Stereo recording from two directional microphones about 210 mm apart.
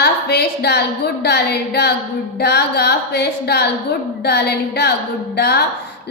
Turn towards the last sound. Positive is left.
turn(degrees=50)  # may be behind; listen again after turning